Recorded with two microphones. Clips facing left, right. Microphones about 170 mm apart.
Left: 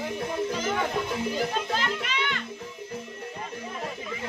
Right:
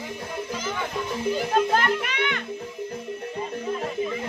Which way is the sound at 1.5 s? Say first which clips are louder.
Right 7 dB; 50° right (ahead or behind).